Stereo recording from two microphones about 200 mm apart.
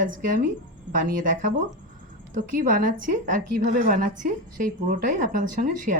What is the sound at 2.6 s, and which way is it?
A woman's voice, 40° right (ahead or behind).